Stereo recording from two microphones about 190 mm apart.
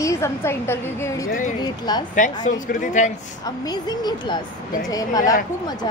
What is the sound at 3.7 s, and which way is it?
Speech, 20° left (ahead or behind).